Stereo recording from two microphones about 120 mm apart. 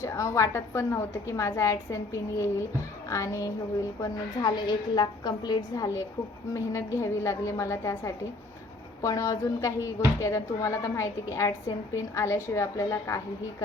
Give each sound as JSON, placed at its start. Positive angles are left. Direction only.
{"t": 0.0, "sound": "a woman's voice", "side_deg": 25}
{"t": 4.0, "sound": "a woman's voice", "side_deg": 35}